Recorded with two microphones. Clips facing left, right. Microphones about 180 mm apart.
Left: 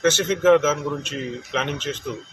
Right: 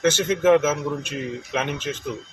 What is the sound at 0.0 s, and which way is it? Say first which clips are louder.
Speech: left 1 dB; 10° right (ahead or behind).